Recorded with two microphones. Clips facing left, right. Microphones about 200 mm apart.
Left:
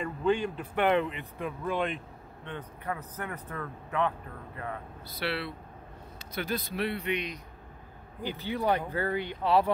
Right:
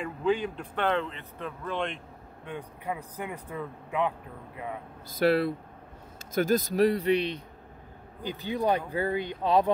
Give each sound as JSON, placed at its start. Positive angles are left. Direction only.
{"t": 0.0, "sound": "a man's voice", "side_deg": 0}
{"t": 0.7, "sound": "speech", "side_deg": 15}
{"t": 2.4, "sound": "speech", "side_deg": -10}
{"t": 5.2, "sound": "speech", "side_deg": -45}
{"t": 8.2, "sound": "speech", "side_deg": -15}